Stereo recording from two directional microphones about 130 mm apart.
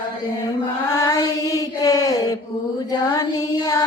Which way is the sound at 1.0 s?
30° left (ahead or behind).